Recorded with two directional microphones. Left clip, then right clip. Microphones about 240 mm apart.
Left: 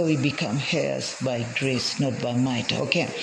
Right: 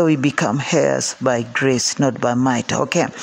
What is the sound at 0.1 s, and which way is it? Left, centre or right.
Speech, right.